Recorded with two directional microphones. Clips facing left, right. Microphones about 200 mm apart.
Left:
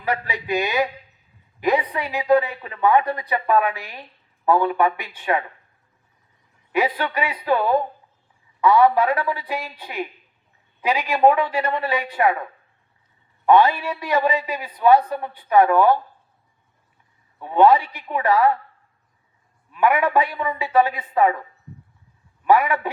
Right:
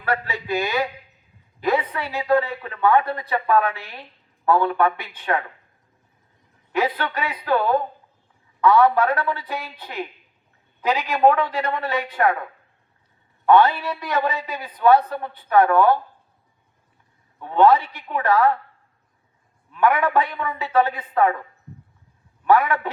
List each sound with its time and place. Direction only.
0.0 s a man's voice: 15° left (ahead or behind)
6.7 s a woman's voice: 10° left (ahead or behind)
13.4 s a woman's voice: 10° left (ahead or behind)
17.4 s a woman's voice: 10° left (ahead or behind)
19.7 s a woman's voice: 10° left (ahead or behind)
22.4 s a woman's voice: 10° left (ahead or behind)